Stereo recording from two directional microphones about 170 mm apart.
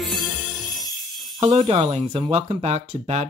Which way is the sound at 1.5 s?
40° right (ahead or behind).